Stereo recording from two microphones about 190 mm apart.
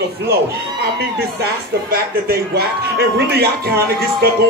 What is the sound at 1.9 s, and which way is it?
Speech, 55° right (ahead or behind).